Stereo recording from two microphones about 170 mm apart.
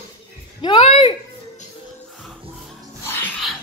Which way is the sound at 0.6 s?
30° left (ahead or behind).